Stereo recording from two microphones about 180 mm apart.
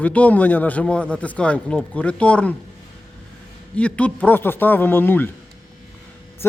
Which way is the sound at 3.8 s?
5° left (ahead or behind).